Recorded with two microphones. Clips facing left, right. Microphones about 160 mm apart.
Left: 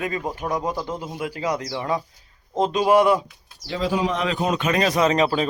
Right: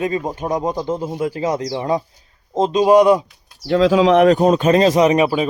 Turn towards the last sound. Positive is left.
turn(degrees=-10)  # may be behind; listen again after turning